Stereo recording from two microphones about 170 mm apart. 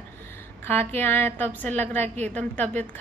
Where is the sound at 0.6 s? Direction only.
10° left (ahead or behind).